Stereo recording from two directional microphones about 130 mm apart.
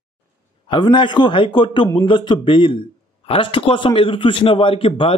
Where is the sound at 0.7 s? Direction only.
35° left (ahead or behind).